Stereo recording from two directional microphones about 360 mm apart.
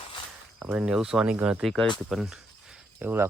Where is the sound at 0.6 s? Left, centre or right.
Centre.